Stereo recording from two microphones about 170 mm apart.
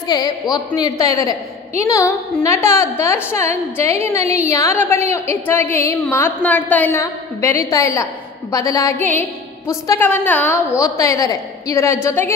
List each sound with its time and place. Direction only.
0.1 s a woman's voice: 25° left (ahead or behind)